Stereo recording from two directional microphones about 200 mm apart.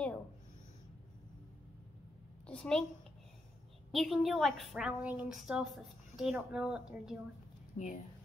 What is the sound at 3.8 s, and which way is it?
A woman's voice, centre (ahead or behind).